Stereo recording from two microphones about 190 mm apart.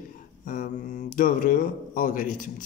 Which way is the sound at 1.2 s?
45° left (ahead or behind).